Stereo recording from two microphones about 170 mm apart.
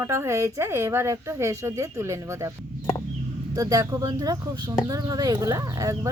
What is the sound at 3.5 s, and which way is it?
Speech, 20° right (ahead or behind).